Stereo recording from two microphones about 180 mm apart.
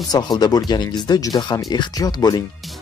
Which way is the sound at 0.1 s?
20° left (ahead or behind).